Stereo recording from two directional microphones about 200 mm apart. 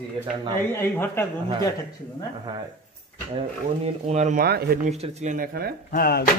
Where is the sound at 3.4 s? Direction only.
35° right (ahead or behind); by 4.7 s 50° right (ahead or behind).